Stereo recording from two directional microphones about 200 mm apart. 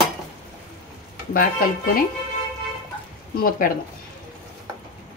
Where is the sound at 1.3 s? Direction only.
45° left (ahead or behind).